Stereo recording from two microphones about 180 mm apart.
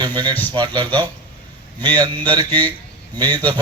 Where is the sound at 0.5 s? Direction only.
25° right (ahead or behind).